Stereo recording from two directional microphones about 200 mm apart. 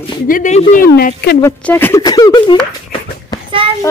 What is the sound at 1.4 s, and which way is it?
Speech, 10° left (ahead or behind).